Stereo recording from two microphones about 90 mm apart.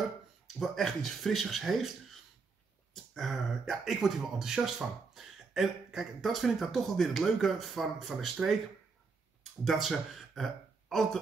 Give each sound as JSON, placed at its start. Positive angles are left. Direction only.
{"t": 0.6, "sound": "speech", "side_deg": 5}
{"t": 2.9, "sound": "speech", "side_deg": 0}
{"t": 9.4, "sound": "speech", "side_deg": 0}